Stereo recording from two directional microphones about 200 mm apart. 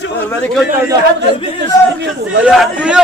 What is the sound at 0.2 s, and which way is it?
Speech, 10° left (ahead or behind).